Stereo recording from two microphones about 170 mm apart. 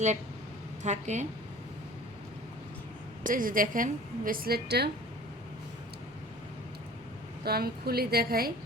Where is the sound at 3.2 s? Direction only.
55° right (ahead or behind); by 4.8 s 70° right (ahead or behind).